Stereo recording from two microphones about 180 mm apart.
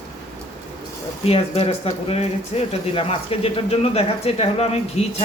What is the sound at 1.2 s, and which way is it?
Speech, 35° left (ahead or behind).